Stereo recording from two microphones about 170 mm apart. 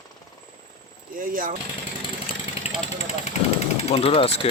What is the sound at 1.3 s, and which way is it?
Speech, 50° right (ahead or behind).